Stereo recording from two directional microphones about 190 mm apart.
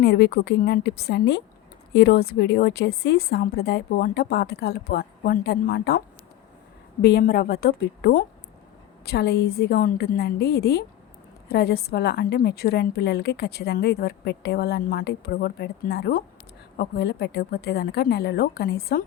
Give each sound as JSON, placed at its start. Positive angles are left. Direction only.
{"t": 0.0, "sound": "a woman's voice", "side_deg": 60}
{"t": 7.0, "sound": "a woman's voice", "side_deg": 55}